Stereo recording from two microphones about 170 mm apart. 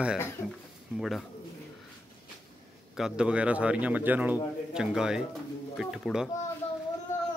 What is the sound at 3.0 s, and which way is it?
Speech, 5° right (ahead or behind).